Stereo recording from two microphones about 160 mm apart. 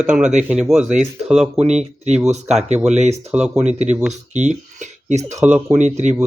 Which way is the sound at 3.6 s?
45° right (ahead or behind).